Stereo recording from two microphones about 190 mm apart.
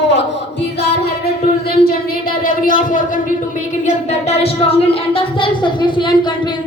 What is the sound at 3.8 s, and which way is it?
Speech, 30° left (ahead or behind).